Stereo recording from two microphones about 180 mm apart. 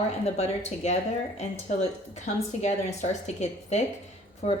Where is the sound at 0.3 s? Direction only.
35° left (ahead or behind).